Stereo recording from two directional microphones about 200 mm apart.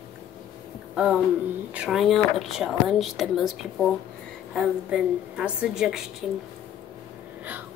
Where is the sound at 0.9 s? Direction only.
Centre (ahead or behind).